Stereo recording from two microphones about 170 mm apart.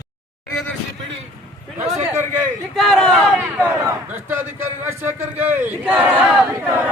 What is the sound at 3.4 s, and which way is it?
Speech, 10° right (ahead or behind).